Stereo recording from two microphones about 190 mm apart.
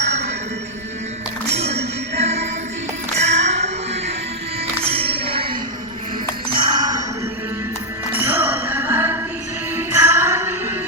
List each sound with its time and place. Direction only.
1.5 s music: 35° right (ahead or behind)
6.6 s a sound: 20° right (ahead or behind)
8.1 s music: 10° right (ahead or behind)